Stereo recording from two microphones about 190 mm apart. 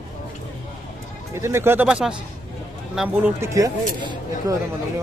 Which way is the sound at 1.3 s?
15° right (ahead or behind).